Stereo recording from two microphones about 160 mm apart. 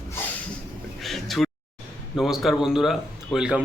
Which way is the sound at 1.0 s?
Centre (ahead or behind).